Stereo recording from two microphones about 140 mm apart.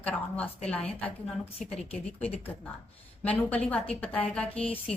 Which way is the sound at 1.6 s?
45° left (ahead or behind).